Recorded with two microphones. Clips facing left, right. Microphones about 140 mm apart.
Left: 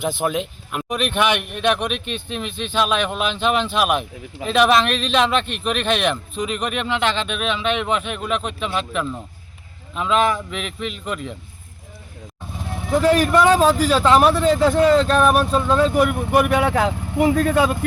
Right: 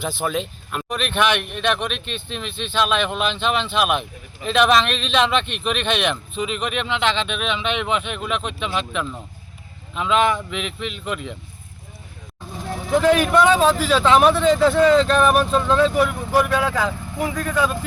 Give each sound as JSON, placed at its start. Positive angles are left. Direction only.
{"t": 0.2, "sound": "speech", "side_deg": 10}
{"t": 12.9, "sound": "speech", "side_deg": 0}
{"t": 16.4, "sound": "speech", "side_deg": 60}